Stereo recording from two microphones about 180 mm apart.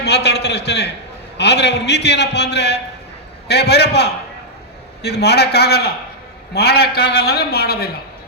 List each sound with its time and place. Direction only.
0.0 s a man's voice: 65° left (ahead or behind)